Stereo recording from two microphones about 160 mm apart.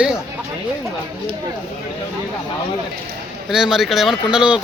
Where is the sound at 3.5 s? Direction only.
5° right (ahead or behind).